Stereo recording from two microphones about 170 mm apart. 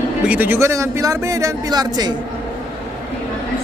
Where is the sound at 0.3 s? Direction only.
10° right (ahead or behind).